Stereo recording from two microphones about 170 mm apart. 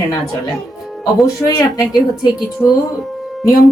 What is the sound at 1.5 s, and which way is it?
Speech, 20° left (ahead or behind).